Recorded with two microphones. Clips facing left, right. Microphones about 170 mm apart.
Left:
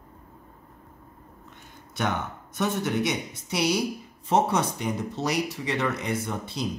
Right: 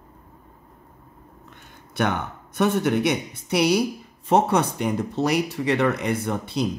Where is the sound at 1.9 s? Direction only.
60° right (ahead or behind).